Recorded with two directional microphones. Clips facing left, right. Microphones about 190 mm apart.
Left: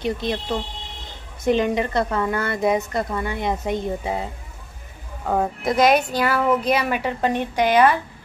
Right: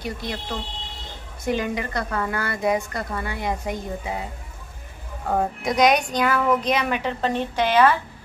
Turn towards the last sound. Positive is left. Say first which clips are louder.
# left 2 dB
turn(degrees=15)  # may be behind; listen again after turning